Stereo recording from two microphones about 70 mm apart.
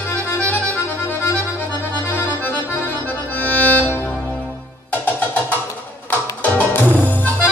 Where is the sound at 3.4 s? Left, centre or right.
Left.